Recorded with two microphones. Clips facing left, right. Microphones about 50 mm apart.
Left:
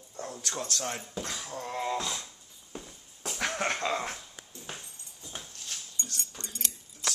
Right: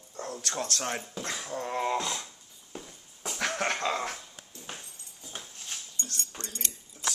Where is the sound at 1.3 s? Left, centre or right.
Centre.